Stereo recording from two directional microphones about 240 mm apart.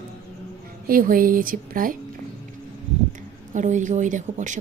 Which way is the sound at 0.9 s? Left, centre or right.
Right.